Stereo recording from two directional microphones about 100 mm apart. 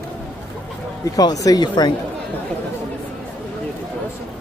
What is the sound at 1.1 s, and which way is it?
Speech, 35° left (ahead or behind).